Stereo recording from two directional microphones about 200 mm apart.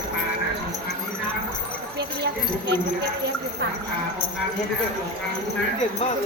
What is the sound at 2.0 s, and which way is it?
Speech, 60° right (ahead or behind).